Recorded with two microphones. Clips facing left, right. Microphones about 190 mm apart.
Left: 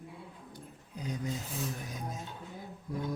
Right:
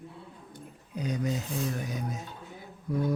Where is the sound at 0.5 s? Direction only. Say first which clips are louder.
Right 8 dB; 70° right (ahead or behind).